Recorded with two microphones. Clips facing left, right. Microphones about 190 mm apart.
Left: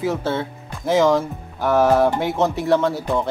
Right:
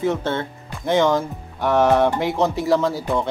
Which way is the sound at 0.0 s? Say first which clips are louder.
Even; 5° left (ahead or behind).